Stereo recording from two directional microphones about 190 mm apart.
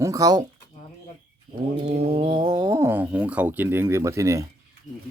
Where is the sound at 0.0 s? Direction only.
20° right (ahead or behind).